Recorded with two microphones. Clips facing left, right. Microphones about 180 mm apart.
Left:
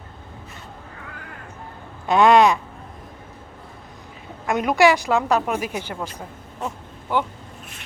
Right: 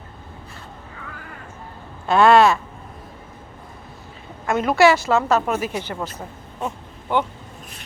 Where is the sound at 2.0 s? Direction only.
15° left (ahead or behind).